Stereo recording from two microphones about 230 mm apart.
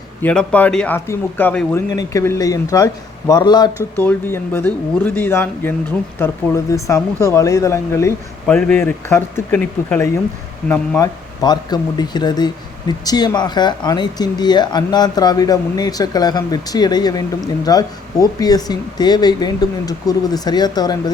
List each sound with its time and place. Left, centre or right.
0.2 s speech: centre